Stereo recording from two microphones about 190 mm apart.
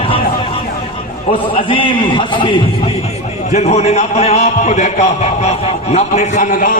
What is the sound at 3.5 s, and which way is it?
A man's voice, 35° left (ahead or behind).